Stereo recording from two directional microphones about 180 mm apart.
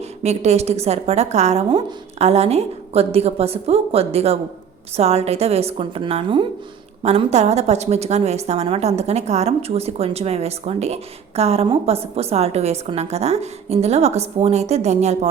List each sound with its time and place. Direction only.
0.2 s a woman's voice: 35° right (ahead or behind)